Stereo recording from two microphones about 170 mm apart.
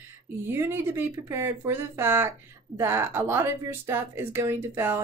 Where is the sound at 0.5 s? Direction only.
15° right (ahead or behind).